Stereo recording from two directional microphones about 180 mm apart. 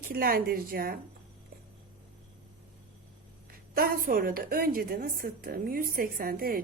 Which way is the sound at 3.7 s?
55° right (ahead or behind).